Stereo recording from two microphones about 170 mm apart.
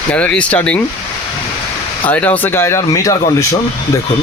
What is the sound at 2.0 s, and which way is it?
Speech, 10° left (ahead or behind).